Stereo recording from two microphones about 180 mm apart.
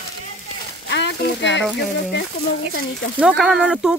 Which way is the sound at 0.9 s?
75° left (ahead or behind).